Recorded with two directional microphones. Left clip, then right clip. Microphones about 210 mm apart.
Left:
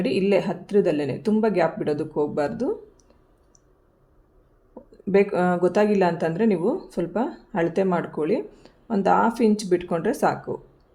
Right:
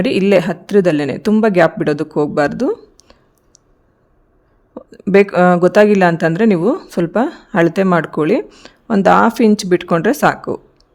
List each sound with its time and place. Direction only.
0.0 s speech: 55° right (ahead or behind)
4.7 s speech: 55° right (ahead or behind)